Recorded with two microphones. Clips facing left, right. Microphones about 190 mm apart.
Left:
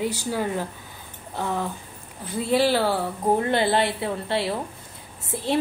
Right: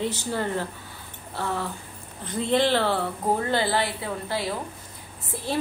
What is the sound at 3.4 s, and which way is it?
A woman's voice, 20° left (ahead or behind).